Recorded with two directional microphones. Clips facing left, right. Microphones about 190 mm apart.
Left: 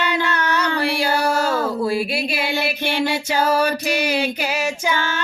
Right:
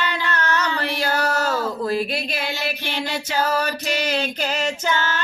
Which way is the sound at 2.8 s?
55° left (ahead or behind).